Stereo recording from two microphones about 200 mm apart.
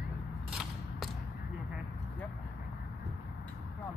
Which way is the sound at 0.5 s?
Centre (ahead or behind).